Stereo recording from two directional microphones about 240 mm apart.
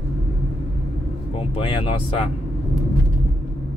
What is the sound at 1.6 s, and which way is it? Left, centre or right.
Speech, left.